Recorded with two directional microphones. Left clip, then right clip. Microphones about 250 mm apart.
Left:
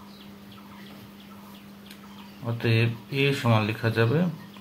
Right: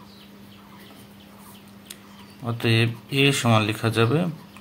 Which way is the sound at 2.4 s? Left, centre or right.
Right.